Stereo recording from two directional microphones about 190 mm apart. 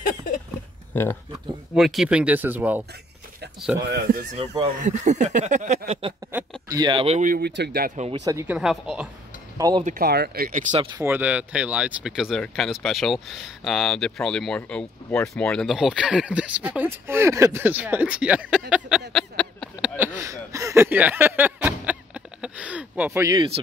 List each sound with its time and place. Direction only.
1.8 s speech: centre (ahead or behind)
3.8 s speech: 55° right (ahead or behind)
4.8 s speech: 40° right (ahead or behind)
7.2 s speech: 50° right (ahead or behind)
8.3 s speech: 15° right (ahead or behind)
8.5 s speech: 5° right (ahead or behind)
9.6 s speech: 20° right (ahead or behind)
9.8 s speech: 55° right (ahead or behind)
10.7 s speech: 25° right (ahead or behind)
11.1 s speech: 10° right (ahead or behind)
18.7 s a sound: 5° right (ahead or behind)
20.0 s a sound: 15° right (ahead or behind)
23.3 s speech: 30° right (ahead or behind)